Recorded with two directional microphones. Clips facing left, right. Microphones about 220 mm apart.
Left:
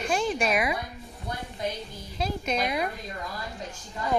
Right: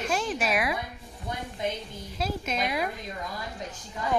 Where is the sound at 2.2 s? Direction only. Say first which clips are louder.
Left 2 dB; centre (ahead or behind).